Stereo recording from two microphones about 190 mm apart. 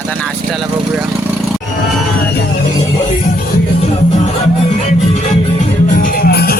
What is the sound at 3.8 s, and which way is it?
Music, 35° left (ahead or behind).